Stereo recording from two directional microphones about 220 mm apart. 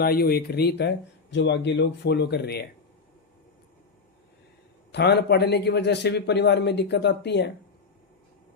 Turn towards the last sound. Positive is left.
turn(degrees=50)  # may be behind; listen again after turning